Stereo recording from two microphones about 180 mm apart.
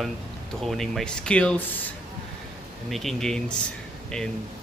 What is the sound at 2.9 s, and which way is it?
Speech, centre (ahead or behind).